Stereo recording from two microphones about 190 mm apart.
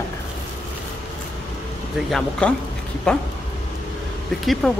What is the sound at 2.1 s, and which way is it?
Speech, 5° left (ahead or behind).